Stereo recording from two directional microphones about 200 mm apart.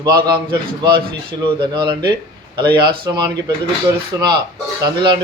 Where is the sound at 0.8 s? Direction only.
25° right (ahead or behind).